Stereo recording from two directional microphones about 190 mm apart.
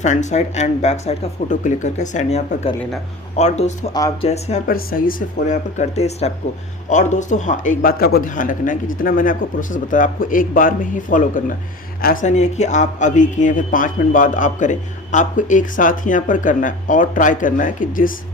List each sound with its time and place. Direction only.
0.0 s speech: 40° left (ahead or behind)
4.7 s speech: 50° left (ahead or behind)